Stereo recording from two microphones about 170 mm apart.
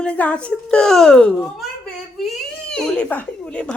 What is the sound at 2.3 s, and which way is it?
Baby cry, 5° left (ahead or behind).